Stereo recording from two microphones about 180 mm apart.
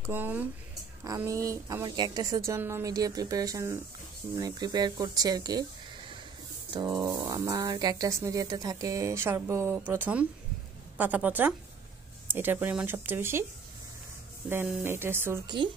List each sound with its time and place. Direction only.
0.1 s a woman's voice: 10° right (ahead or behind)
14.5 s a woman's voice: 10° right (ahead or behind)